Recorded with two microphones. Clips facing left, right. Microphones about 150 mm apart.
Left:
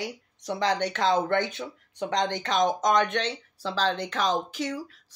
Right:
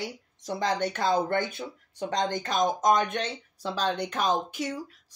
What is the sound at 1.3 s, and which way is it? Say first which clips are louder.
Speech: left 2 dB; 45° right (ahead or behind).